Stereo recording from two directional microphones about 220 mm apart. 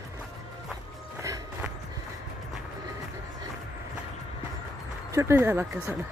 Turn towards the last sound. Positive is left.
turn(degrees=-10)  # may be behind; listen again after turning